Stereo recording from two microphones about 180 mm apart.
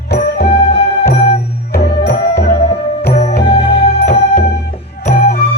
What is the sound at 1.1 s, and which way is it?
Music, 30° left (ahead or behind).